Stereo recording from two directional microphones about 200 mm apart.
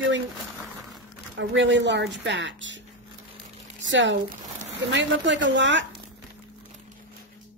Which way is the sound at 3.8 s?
65° right (ahead or behind).